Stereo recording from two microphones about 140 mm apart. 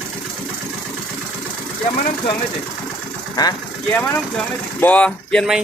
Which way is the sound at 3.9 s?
10° left (ahead or behind).